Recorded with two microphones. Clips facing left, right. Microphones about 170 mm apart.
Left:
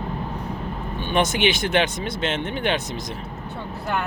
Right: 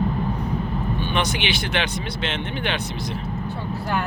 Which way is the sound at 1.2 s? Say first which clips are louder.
Left 7 dB; 45° left (ahead or behind).